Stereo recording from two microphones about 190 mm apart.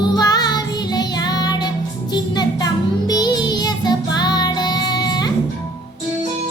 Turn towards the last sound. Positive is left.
turn(degrees=20)  # may be behind; listen again after turning